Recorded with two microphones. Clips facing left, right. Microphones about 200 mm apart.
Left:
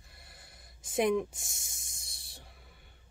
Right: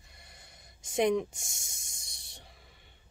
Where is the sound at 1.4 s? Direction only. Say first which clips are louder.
Right 1 dB; centre (ahead or behind).